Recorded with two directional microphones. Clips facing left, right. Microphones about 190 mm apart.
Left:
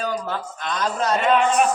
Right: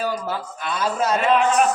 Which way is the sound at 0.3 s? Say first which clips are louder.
Right 1 dB; 10° right (ahead or behind).